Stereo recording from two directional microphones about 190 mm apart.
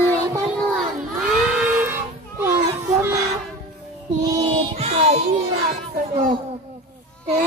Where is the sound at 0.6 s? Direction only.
Centre (ahead or behind).